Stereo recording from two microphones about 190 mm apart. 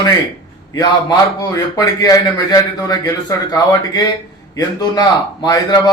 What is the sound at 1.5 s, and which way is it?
A man's voice, 15° left (ahead or behind).